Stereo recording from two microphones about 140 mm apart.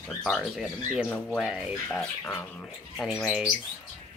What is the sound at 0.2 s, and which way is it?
Speech, 5° left (ahead or behind).